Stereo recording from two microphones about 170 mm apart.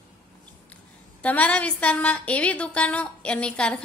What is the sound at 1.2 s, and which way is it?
A woman's voice, 10° left (ahead or behind).